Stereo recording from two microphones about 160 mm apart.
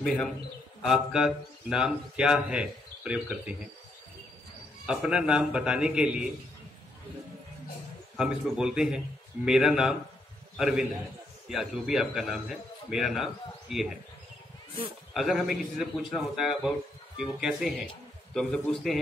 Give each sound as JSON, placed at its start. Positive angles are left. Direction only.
{"t": 0.0, "sound": "speech", "side_deg": 5}
{"t": 4.8, "sound": "speech", "side_deg": -5}
{"t": 8.2, "sound": "speech", "side_deg": -5}
{"t": 15.1, "sound": "speech", "side_deg": 0}